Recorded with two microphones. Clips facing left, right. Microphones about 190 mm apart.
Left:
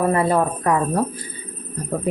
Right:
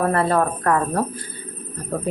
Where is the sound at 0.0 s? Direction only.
15° left (ahead or behind).